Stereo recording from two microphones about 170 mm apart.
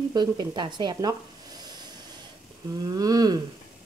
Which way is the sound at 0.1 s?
25° right (ahead or behind).